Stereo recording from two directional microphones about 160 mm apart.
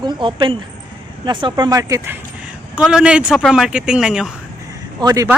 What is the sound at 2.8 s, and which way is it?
Speech, 5° right (ahead or behind).